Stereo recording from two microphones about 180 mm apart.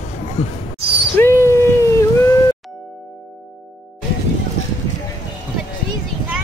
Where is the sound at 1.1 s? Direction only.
15° left (ahead or behind).